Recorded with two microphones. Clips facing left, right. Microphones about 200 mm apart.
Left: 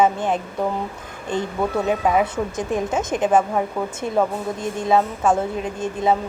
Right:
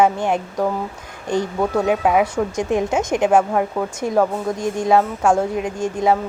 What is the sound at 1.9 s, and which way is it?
Speech, 10° right (ahead or behind).